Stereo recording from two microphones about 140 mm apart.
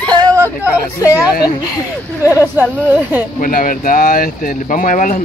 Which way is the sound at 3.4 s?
85° left.